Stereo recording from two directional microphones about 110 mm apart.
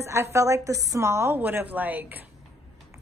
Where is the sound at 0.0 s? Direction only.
25° right (ahead or behind).